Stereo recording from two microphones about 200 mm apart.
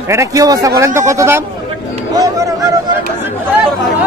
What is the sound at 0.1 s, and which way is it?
A man's voice, 15° right (ahead or behind).